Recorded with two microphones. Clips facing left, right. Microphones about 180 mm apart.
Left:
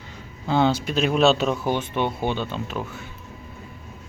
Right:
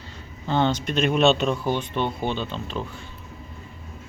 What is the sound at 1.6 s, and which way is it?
A woman's voice, 10° left (ahead or behind).